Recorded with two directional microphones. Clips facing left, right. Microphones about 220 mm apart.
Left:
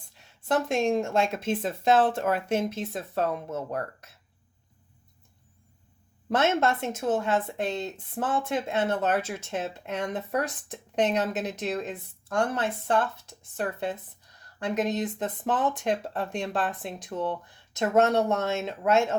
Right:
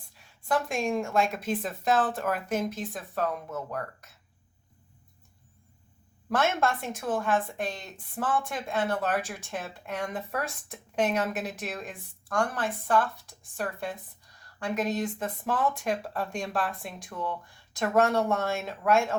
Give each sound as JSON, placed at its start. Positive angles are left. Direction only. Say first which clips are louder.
{"t": 0.4, "sound": "a woman's voice", "louder": "left 3 dB", "side_deg": 25}
{"t": 6.3, "sound": "a woman's voice", "louder": "left 3 dB", "side_deg": 25}